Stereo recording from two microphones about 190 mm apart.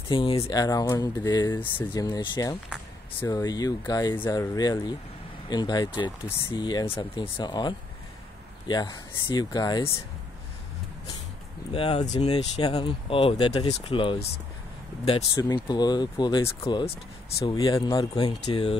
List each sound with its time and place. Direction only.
0.1 s speech: 30° left (ahead or behind)
11.7 s speech: 30° left (ahead or behind)
15.3 s speech: 20° left (ahead or behind)